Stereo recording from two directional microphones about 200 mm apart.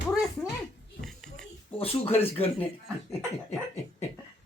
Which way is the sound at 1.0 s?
Centre (ahead or behind).